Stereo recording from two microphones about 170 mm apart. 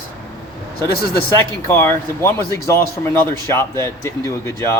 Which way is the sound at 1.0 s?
65° left (ahead or behind).